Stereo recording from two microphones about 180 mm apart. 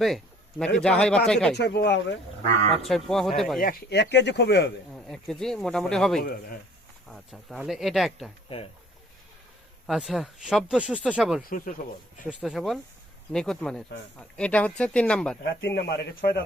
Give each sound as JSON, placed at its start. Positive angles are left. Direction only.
{"t": 0.6, "sound": "speech", "side_deg": 5}
{"t": 1.5, "sound": "speech", "side_deg": 70}
{"t": 2.8, "sound": "speech", "side_deg": 0}
{"t": 3.6, "sound": "speech", "side_deg": 55}
{"t": 4.9, "sound": "speech", "side_deg": 0}
{"t": 8.5, "sound": "speech", "side_deg": 30}
{"t": 9.8, "sound": "speech", "side_deg": 0}
{"t": 11.4, "sound": "speech", "side_deg": 50}
{"t": 12.3, "sound": "speech", "side_deg": 0}
{"t": 15.7, "sound": "a man's voice", "side_deg": 65}